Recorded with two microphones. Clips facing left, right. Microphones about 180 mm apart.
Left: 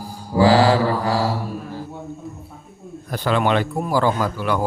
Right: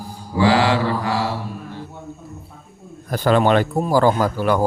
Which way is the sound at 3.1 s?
45° right (ahead or behind).